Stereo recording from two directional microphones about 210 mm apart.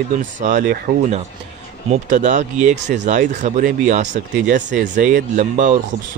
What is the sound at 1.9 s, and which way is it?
Speech, 35° right (ahead or behind).